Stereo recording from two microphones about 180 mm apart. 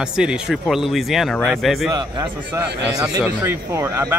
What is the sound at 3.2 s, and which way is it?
Speech, 10° right (ahead or behind).